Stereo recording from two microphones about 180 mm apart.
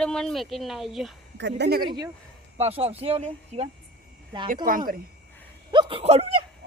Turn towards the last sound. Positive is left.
turn(degrees=-35)  # may be behind; listen again after turning